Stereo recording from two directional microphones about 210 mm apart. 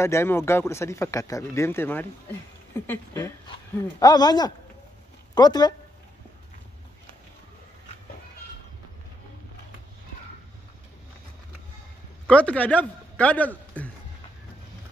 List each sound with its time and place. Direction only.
0.0 s a man's voice: 10° left (ahead or behind)
12.3 s a man's voice: 5° left (ahead or behind)